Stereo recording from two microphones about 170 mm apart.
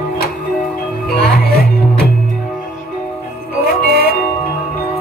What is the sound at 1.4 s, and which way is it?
Music, 65° left (ahead or behind).